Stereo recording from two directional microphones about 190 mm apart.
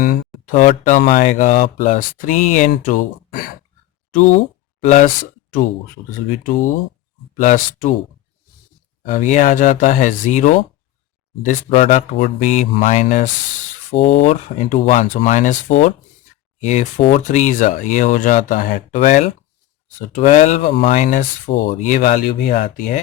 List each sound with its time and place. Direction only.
0.0 s speech: 45° left (ahead or behind)
9.0 s speech: 45° left (ahead or behind)